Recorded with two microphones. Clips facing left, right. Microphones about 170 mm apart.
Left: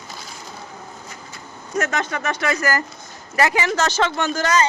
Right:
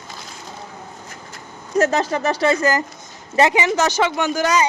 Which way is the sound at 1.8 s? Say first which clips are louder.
Right 6 dB; 35° right (ahead or behind).